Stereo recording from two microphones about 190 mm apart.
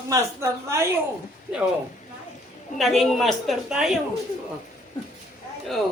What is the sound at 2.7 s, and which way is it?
Speech, centre (ahead or behind).